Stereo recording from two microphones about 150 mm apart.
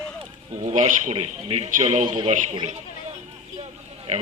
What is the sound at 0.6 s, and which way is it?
Speech, 50° right (ahead or behind).